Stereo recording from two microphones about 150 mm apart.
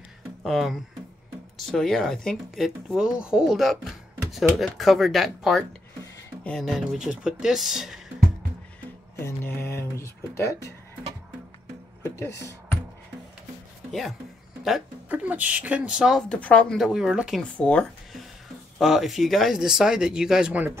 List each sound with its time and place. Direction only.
0.4 s speech: centre (ahead or behind)
9.2 s a sound: 15° left (ahead or behind)
12.0 s speech: 15° left (ahead or behind)
14.6 s speech: 5° right (ahead or behind)
17.4 s speech: 10° left (ahead or behind); by 20.7 s 5° right (ahead or behind)